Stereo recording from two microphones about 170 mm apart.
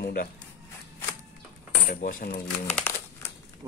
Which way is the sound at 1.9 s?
55° left (ahead or behind).